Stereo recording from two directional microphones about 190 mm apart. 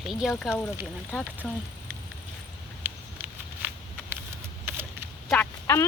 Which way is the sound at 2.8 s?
10° right (ahead or behind).